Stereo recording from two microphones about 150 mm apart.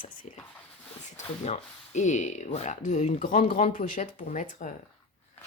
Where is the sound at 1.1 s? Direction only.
50° left (ahead or behind).